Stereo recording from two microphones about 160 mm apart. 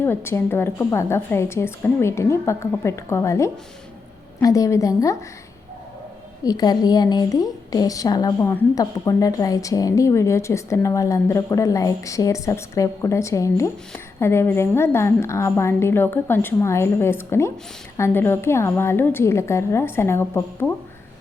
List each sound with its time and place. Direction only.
0.0 s a woman's voice: 15° left (ahead or behind)
6.4 s a woman's voice: 25° left (ahead or behind)